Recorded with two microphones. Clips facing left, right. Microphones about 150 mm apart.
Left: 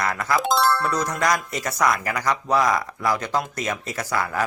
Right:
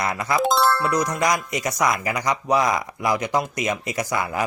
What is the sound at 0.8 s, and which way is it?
Speech, 15° right (ahead or behind).